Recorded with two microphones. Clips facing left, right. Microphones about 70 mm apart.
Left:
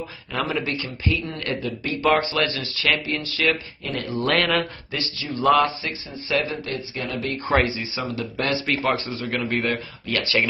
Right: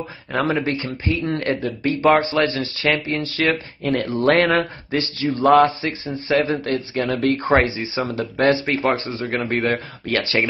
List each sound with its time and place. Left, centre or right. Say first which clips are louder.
0.5 s speech: right 5 dB; right
6.5 s a man's voice: right 7 dB; right
7.5 s speech: left 1 dB; right